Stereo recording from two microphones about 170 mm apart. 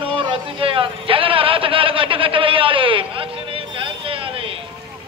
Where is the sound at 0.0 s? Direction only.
30° right (ahead or behind).